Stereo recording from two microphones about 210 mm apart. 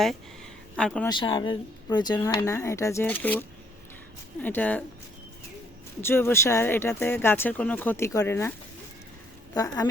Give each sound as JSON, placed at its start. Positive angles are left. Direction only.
{"t": 0.8, "sound": "speech", "side_deg": 5}
{"t": 1.0, "sound": "speech", "side_deg": 20}
{"t": 4.4, "sound": "speech", "side_deg": 10}
{"t": 6.0, "sound": "speech", "side_deg": 10}
{"t": 9.6, "sound": "speech", "side_deg": 15}